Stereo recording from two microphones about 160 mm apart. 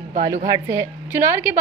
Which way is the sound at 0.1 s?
45° right (ahead or behind).